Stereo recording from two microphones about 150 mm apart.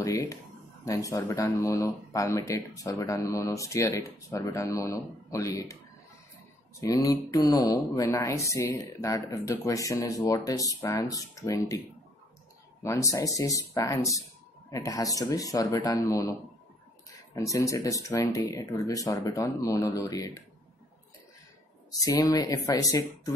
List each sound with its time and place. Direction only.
0.0 s speech: 20° left (ahead or behind)
6.8 s speech: 25° left (ahead or behind)
12.8 s speech: 20° left (ahead or behind)
17.5 s speech: 20° left (ahead or behind)
21.9 s speech: 25° left (ahead or behind)